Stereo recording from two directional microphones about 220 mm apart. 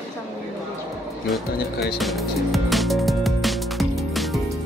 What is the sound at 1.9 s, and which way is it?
Music, centre (ahead or behind).